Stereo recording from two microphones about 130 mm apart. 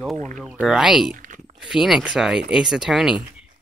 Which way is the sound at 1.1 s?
85° right.